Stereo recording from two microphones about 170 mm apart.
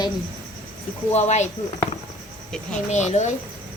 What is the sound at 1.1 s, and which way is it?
Speech, 40° left (ahead or behind).